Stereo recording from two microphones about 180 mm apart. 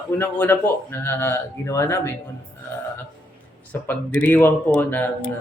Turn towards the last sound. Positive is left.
turn(degrees=10)  # may be behind; listen again after turning